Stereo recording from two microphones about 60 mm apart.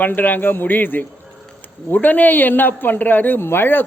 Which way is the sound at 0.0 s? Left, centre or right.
Left.